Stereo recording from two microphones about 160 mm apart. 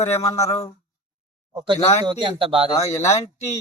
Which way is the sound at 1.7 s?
45° left (ahead or behind).